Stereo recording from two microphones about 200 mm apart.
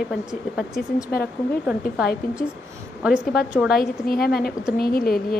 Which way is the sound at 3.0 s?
5° right (ahead or behind).